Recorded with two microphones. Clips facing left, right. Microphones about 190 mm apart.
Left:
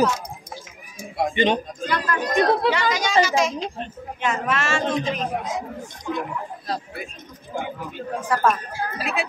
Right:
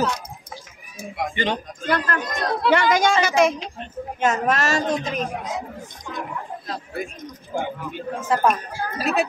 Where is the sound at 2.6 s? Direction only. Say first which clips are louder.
Right 4 dB; 50° right (ahead or behind).